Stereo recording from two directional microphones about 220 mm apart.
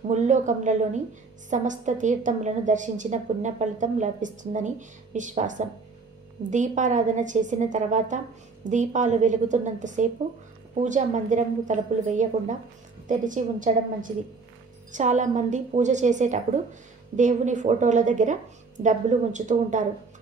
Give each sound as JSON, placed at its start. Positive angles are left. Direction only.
{"t": 0.1, "sound": "a woman's voice", "side_deg": -35}